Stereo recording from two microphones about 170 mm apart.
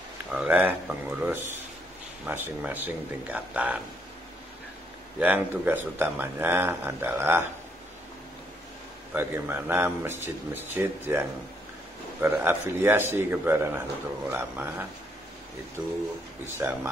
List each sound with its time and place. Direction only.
0.3 s speech: 5° right (ahead or behind)
5.2 s speech: 10° right (ahead or behind)
9.1 s speech: 15° right (ahead or behind)
16.4 s speech: 15° right (ahead or behind)